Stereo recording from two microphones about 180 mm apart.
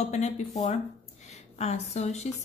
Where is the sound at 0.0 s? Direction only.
40° left (ahead or behind).